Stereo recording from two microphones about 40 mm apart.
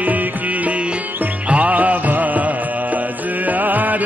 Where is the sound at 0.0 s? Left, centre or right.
Right.